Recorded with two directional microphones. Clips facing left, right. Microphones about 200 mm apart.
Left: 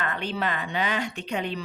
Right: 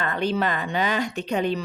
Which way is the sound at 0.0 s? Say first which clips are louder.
Right 5 dB; 40° right (ahead or behind).